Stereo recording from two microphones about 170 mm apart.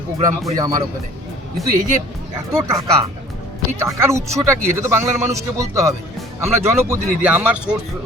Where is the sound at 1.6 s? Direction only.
Centre (ahead or behind).